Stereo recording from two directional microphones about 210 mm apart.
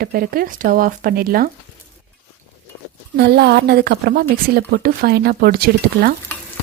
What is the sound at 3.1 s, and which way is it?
A woman's voice, 50° right (ahead or behind).